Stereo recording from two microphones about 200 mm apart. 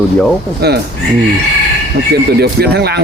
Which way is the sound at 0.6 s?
55° right (ahead or behind).